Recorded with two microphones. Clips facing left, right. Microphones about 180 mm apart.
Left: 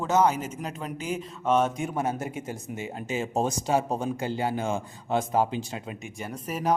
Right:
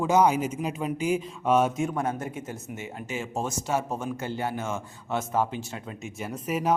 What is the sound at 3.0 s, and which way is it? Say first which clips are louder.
Speech: left 3 dB; 20° left (ahead or behind).